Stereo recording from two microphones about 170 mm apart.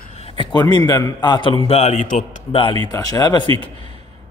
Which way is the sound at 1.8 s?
45° left (ahead or behind).